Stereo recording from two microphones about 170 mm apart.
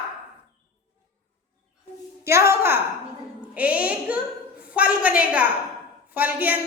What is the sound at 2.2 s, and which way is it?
A woman's voice, 15° right (ahead or behind).